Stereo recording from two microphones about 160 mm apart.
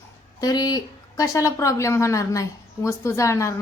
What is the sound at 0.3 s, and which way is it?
Speech, 25° left (ahead or behind).